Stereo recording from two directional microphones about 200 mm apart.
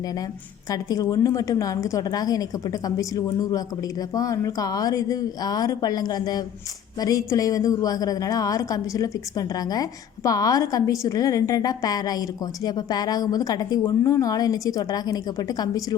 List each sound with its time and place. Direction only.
0.7 s a woman's voice: 20° left (ahead or behind)